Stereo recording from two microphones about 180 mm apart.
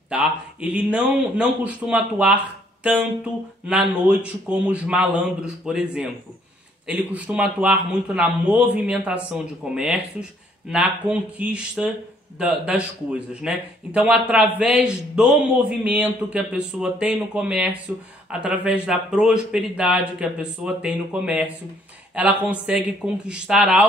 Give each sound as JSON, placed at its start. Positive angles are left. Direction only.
{"t": 0.1, "sound": "speech", "side_deg": -5}